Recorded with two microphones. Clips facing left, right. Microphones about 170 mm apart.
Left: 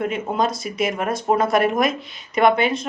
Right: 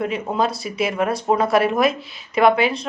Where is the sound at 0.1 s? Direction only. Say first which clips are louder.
Even; centre (ahead or behind).